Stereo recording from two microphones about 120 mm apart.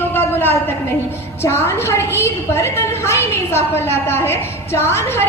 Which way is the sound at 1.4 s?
20° left (ahead or behind).